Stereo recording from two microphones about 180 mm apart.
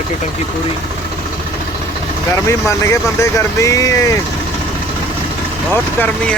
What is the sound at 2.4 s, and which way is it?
Speech, 15° left (ahead or behind).